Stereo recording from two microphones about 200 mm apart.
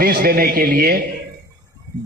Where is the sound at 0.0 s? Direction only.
45° right (ahead or behind).